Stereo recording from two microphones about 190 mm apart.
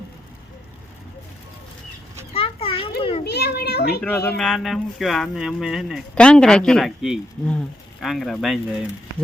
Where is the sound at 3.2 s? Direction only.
55° left (ahead or behind).